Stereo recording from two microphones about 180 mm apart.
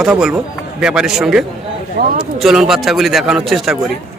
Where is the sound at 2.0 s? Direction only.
60° right (ahead or behind).